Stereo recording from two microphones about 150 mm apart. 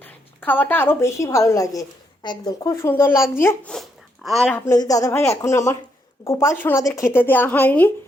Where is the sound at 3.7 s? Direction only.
Centre (ahead or behind).